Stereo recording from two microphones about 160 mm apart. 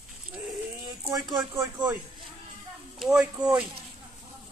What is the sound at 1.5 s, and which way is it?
Speech, 20° right (ahead or behind).